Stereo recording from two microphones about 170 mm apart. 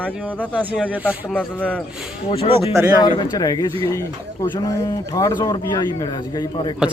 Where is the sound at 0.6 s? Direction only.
10° right (ahead or behind).